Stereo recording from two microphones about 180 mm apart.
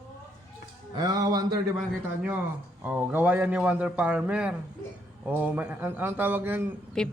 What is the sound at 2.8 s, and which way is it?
A man's voice, 10° right (ahead or behind).